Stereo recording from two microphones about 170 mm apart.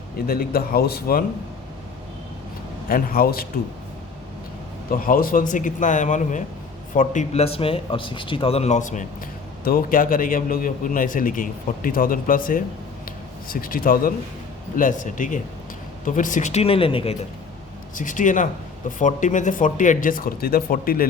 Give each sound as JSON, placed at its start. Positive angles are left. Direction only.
{"t": 0.3, "sound": "speech", "side_deg": 60}
{"t": 2.9, "sound": "speech", "side_deg": 60}
{"t": 4.9, "sound": "a man's voice", "side_deg": 55}
{"t": 13.1, "sound": "a sound", "side_deg": 55}
{"t": 14.8, "sound": "a man's voice", "side_deg": 50}
{"t": 17.9, "sound": "a man's voice", "side_deg": 50}